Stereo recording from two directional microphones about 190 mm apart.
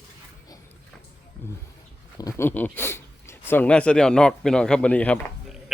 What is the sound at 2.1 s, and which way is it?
A man's voice, 15° left (ahead or behind).